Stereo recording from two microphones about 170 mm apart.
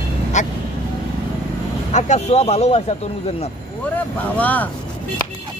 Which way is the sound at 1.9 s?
40° left (ahead or behind).